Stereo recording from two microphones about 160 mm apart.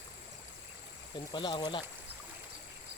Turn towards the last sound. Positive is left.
turn(degrees=30)  # may be behind; listen again after turning